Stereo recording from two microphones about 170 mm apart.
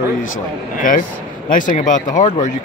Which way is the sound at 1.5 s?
50° left (ahead or behind).